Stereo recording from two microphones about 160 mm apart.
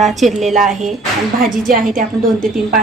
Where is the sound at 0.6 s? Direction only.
50° right (ahead or behind).